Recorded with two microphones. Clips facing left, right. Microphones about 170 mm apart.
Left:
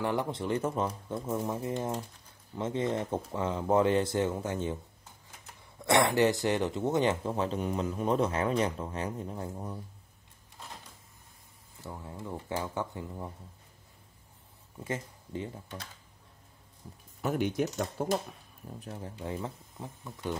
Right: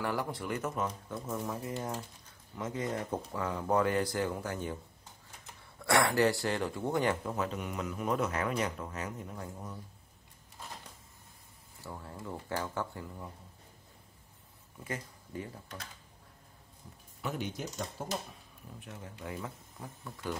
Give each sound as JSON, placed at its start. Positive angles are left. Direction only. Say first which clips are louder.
{"t": 0.0, "sound": "speech", "louder": "left 4 dB", "side_deg": 20}
{"t": 5.8, "sound": "speech", "louder": "left 3 dB", "side_deg": 20}
{"t": 11.8, "sound": "speech", "louder": "left 2 dB", "side_deg": 15}
{"t": 14.8, "sound": "speech", "louder": "left 4 dB", "side_deg": 25}
{"t": 17.2, "sound": "speech", "louder": "left 8 dB", "side_deg": 55}
{"t": 18.8, "sound": "speech", "louder": "left 5 dB", "side_deg": 35}